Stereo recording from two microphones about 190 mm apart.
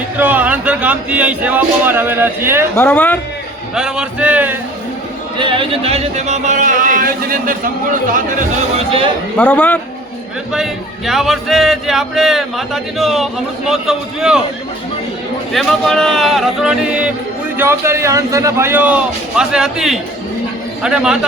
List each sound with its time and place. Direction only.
0.2 s speech: 10° right (ahead or behind)
2.7 s a man's voice: 10° left (ahead or behind)
3.8 s speech: 5° right (ahead or behind)
5.4 s speech: 25° right (ahead or behind); by 8.2 s 45° right (ahead or behind)
9.4 s a man's voice: 10° left (ahead or behind)
10.5 s speech: centre (ahead or behind)
15.5 s speech: centre (ahead or behind)